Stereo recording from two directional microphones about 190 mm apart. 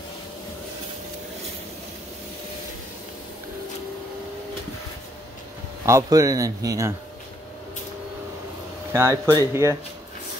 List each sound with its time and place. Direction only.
5.9 s speech: 15° right (ahead or behind)
8.9 s speech: 15° right (ahead or behind)